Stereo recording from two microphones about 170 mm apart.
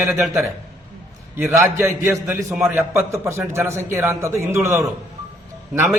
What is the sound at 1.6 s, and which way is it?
A man's voice, 15° right (ahead or behind).